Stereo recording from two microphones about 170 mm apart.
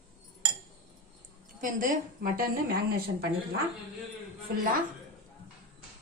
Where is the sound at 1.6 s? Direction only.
50° right (ahead or behind).